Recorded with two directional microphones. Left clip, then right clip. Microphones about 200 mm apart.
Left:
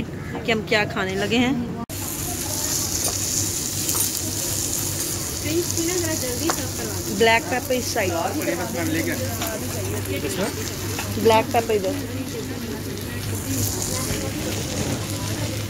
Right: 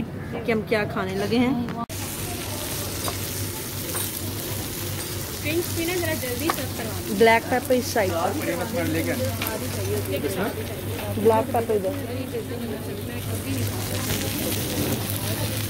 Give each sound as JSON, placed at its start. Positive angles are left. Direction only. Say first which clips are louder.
{"t": 0.5, "sound": "a woman's voice", "louder": "left 3 dB", "side_deg": -5}
{"t": 7.2, "sound": "speech", "louder": "even", "side_deg": -20}
{"t": 11.2, "sound": "a woman's voice", "louder": "left 3 dB", "side_deg": 0}